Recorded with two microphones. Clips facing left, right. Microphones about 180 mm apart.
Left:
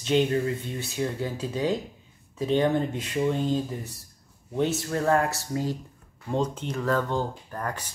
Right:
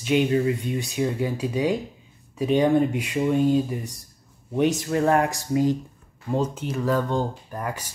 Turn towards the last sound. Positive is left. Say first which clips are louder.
# right 2 dB
turn(degrees=-10)  # may be behind; listen again after turning